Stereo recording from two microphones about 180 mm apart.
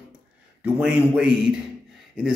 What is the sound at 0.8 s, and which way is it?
A man's voice, 5° right (ahead or behind).